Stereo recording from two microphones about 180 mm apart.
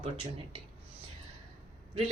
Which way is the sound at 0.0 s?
30° right (ahead or behind).